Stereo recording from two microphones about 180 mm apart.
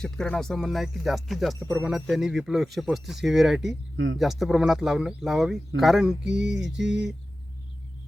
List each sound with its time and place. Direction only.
0.0 s speech: 5° left (ahead or behind)
3.9 s speech: 90° right
4.2 s speech: centre (ahead or behind)